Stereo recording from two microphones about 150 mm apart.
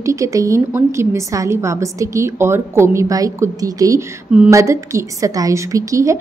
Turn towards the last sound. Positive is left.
turn(degrees=-20)  # may be behind; listen again after turning